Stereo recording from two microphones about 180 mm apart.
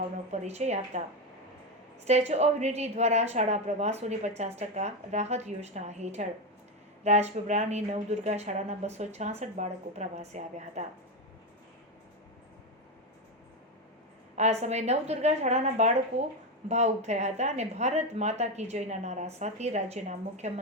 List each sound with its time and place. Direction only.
0.3 s a woman's voice: 40° right (ahead or behind)
2.0 s a woman's voice: 40° right (ahead or behind)
14.3 s a woman's voice: 40° right (ahead or behind)